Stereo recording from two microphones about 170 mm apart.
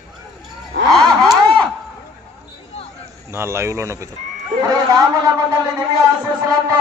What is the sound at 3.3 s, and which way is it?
Speech, 15° right (ahead or behind).